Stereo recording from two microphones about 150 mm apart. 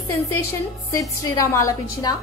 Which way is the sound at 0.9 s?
20° left (ahead or behind).